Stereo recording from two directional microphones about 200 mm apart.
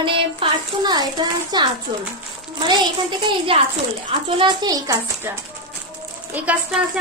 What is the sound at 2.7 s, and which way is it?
A woman's voice, 25° right (ahead or behind).